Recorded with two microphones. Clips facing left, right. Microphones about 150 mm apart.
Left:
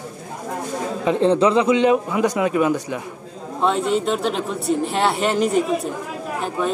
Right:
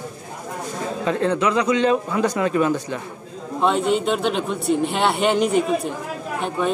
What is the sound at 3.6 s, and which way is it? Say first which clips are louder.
Speech: even; centre (ahead or behind).